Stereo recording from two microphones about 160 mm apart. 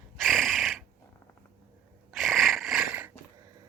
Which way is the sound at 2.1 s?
Centre (ahead or behind).